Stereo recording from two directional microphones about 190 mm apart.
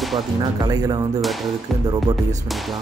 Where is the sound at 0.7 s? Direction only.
20° right (ahead or behind).